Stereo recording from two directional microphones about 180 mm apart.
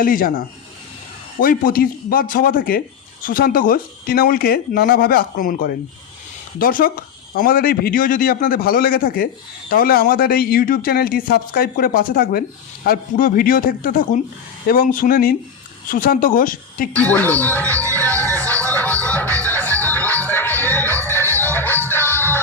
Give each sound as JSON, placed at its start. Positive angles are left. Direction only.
{"t": 0.0, "sound": "a man's voice", "side_deg": 50}
{"t": 16.9, "sound": "speech", "side_deg": 10}
{"t": 18.0, "sound": "music", "side_deg": 10}